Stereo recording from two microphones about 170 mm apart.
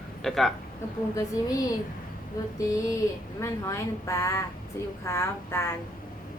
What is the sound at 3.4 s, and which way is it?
A woman's voice, 15° left (ahead or behind).